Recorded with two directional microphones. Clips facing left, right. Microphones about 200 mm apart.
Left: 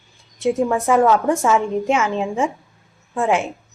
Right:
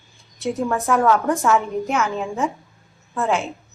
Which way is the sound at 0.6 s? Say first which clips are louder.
Even; 10° left (ahead or behind).